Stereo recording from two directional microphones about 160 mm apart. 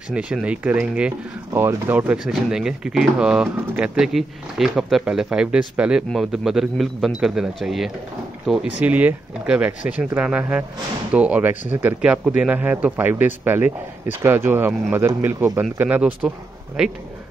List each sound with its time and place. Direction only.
0.1 s speech: 5° right (ahead or behind)